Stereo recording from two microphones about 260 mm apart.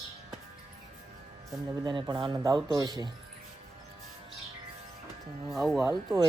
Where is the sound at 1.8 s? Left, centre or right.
Centre.